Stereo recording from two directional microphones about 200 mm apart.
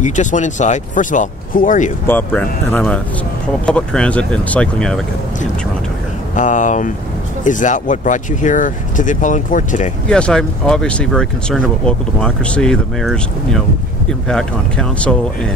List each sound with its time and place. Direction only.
0.0 s speech: 40° left (ahead or behind)
2.0 s speech: 10° left (ahead or behind)
6.3 s speech: 40° left (ahead or behind)
10.0 s speech: 5° left (ahead or behind)